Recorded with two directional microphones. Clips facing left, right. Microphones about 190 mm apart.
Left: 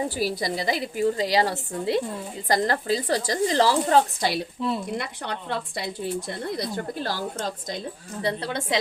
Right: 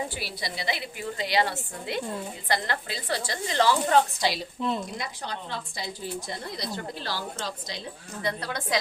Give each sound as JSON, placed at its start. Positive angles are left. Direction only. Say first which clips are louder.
{"t": 0.1, "sound": "a woman's voice", "louder": "left 9 dB", "side_deg": 40}
{"t": 4.2, "sound": "a woman's voice", "louder": "left 2 dB", "side_deg": 55}
{"t": 8.2, "sound": "speech", "louder": "left 4 dB", "side_deg": 30}